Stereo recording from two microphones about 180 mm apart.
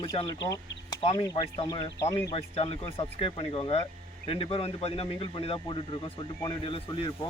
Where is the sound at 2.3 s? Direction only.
30° left (ahead or behind).